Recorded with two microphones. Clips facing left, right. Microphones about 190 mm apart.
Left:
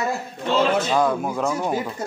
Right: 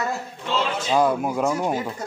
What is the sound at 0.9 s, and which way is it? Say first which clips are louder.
Speech: right 1 dB; 10° right (ahead or behind).